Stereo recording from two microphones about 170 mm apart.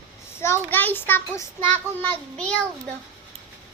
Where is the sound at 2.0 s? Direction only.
5° left (ahead or behind).